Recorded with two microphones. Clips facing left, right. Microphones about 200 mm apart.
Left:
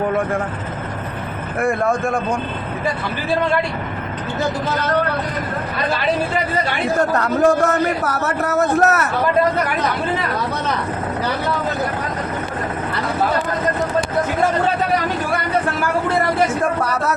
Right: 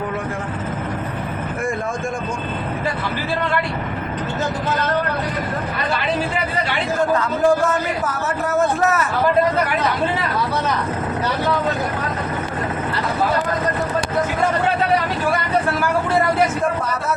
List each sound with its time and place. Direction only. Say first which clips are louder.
1.6 s a sound: left 7 dB; 65° left (ahead or behind)
7.0 s a man's voice: left 1 dB; 70° left (ahead or behind)
16.8 s a man's voice: left 3 dB; 70° left (ahead or behind)